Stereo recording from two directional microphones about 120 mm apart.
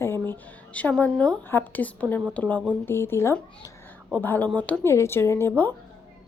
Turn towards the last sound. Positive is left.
turn(degrees=20)  # may be behind; listen again after turning